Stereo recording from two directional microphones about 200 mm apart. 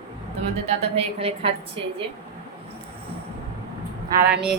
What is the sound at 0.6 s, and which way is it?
A woman's voice, 30° right (ahead or behind).